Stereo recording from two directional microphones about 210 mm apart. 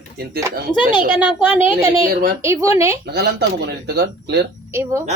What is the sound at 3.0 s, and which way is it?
Speech, 50° right (ahead or behind).